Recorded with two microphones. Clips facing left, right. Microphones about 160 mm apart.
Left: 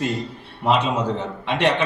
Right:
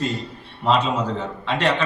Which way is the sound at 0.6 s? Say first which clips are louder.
Even; 15° left (ahead or behind).